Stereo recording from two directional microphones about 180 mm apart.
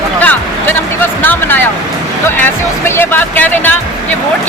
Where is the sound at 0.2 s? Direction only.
10° left (ahead or behind).